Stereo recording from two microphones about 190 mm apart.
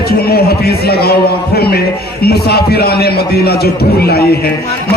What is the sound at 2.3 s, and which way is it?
A man's voice, 55° left (ahead or behind).